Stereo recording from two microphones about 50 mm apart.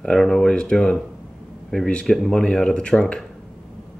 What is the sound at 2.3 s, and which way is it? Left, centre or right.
Speech, centre.